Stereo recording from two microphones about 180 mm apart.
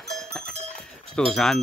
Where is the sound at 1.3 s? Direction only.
5° left (ahead or behind).